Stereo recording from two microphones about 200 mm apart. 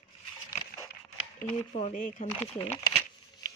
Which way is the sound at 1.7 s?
35° left (ahead or behind).